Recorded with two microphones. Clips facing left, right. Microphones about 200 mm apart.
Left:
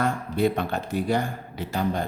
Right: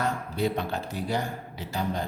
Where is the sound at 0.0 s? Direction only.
55° left (ahead or behind).